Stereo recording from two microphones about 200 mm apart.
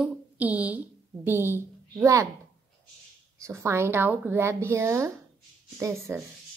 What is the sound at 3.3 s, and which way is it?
A woman's voice, 15° right (ahead or behind).